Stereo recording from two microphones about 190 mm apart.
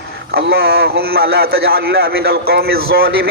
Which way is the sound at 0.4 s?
55° right (ahead or behind).